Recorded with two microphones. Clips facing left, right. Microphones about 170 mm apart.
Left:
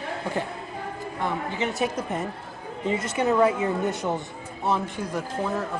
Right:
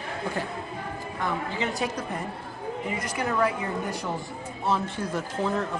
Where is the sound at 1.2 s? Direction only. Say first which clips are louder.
Left 1 dB; 20° left (ahead or behind).